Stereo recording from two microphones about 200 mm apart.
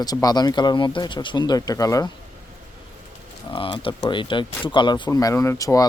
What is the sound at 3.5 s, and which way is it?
Speech, 25° left (ahead or behind).